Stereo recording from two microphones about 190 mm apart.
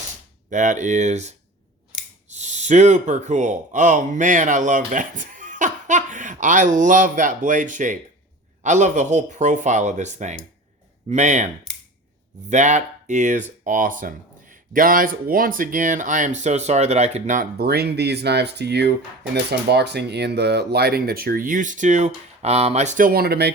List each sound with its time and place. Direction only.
0.5 s speech: 40° right (ahead or behind)
2.3 s speech: 40° right (ahead or behind)
12.5 s speech: 40° right (ahead or behind); by 23.6 s 55° right (ahead or behind)